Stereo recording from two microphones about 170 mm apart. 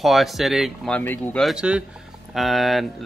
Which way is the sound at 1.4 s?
5° right (ahead or behind).